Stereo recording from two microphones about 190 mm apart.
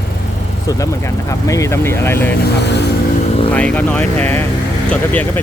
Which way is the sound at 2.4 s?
60° left (ahead or behind).